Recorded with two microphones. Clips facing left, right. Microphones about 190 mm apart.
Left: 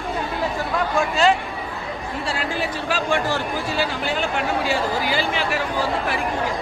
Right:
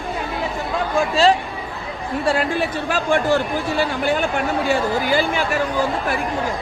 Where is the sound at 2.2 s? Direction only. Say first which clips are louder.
Right 6 dB; 55° right (ahead or behind).